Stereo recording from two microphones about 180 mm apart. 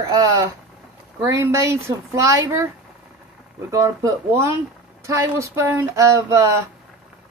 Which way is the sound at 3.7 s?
15° right (ahead or behind).